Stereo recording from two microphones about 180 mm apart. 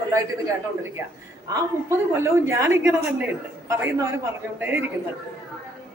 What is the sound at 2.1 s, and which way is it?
A woman's voice, 15° right (ahead or behind).